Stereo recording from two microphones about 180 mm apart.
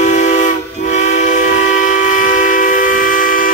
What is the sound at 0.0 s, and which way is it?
Train, 40° left (ahead or behind).